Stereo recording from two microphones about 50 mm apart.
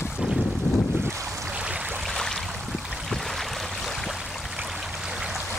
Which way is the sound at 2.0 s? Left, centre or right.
Centre.